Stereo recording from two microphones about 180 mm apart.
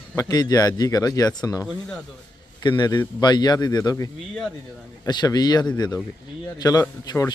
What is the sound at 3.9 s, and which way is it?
Speech, 10° left (ahead or behind).